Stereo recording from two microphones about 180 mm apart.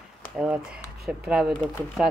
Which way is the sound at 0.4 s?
5° right (ahead or behind).